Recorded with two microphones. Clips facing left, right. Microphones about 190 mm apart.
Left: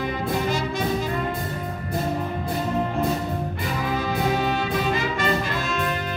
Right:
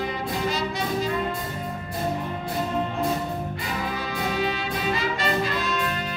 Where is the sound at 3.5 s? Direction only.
50° left (ahead or behind).